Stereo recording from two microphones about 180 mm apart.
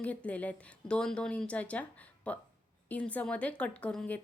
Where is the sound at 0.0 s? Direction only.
10° left (ahead or behind).